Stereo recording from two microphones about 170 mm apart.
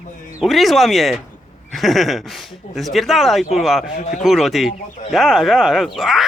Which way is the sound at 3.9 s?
45° left (ahead or behind).